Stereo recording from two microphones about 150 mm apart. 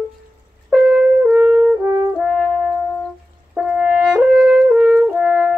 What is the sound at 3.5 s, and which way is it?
French horn, 5° right (ahead or behind).